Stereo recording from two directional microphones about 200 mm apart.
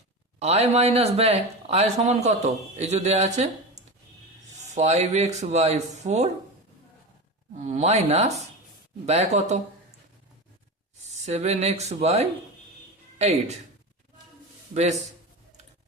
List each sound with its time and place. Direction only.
0.3 s a man's voice: 30° right (ahead or behind)
7.5 s a man's voice: 35° right (ahead or behind)
11.3 s a man's voice: 35° right (ahead or behind)
14.7 s a man's voice: 35° right (ahead or behind)